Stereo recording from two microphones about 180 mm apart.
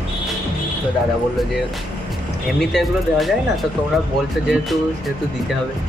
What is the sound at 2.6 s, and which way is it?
Speech, centre (ahead or behind).